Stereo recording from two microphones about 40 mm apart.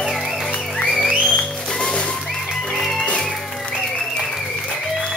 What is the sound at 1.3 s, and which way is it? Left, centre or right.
Music, left.